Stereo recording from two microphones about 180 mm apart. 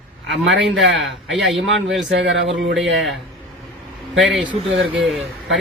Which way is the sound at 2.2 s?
90° right.